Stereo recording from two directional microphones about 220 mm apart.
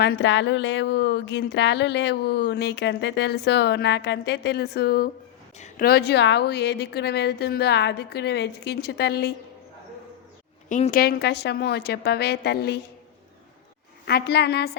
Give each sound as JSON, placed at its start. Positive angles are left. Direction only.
{"t": 0.0, "sound": "speech", "side_deg": 50}
{"t": 10.7, "sound": "a woman's voice", "side_deg": 35}
{"t": 11.0, "sound": "speech", "side_deg": 45}
{"t": 14.0, "sound": "speech", "side_deg": 45}